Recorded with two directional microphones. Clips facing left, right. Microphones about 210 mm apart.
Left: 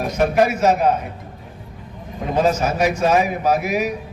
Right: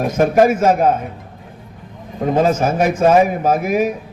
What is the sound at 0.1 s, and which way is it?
Speech, 50° right (ahead or behind).